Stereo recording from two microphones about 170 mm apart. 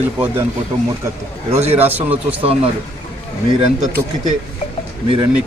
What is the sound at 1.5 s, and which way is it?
Speech, 40° right (ahead or behind).